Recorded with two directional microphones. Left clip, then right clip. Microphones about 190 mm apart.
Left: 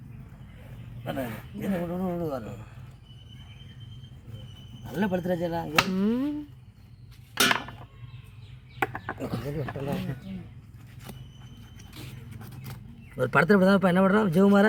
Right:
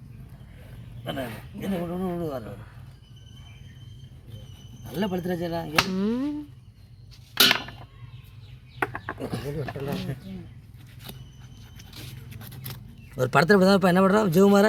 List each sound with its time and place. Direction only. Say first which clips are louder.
1.0 s speech: right 1 dB; 5° right (ahead or behind)
2.4 s speech: right 1 dB; 15° left (ahead or behind)
4.9 s speech: left 1 dB; 15° right (ahead or behind)
5.6 s speech: right 1 dB; centre (ahead or behind)
7.3 s a sound: right 4 dB; 20° right (ahead or behind)
8.8 s livestock: right 1 dB; 10° left (ahead or behind)
9.3 s speech: right 1 dB; 20° right (ahead or behind)
9.8 s speech: even; centre (ahead or behind)
11.9 s vehicle: right 2 dB; centre (ahead or behind)
13.1 s speech: right 2 dB; 60° right (ahead or behind)